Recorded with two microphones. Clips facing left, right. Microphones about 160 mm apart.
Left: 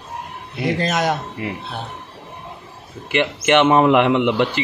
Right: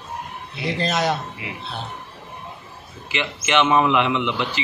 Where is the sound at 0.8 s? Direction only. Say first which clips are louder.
Even; 15° left (ahead or behind).